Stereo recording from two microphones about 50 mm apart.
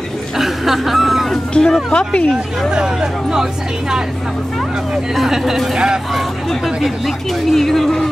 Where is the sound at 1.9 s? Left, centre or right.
Centre.